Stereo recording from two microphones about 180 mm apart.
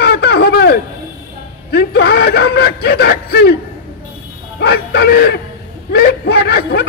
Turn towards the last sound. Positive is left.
turn(degrees=65)  # may be behind; listen again after turning